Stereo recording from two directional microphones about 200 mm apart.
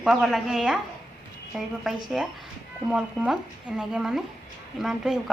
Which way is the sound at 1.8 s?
Centre (ahead or behind).